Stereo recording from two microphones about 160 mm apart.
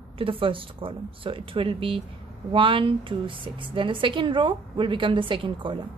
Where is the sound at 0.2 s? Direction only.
35° right (ahead or behind).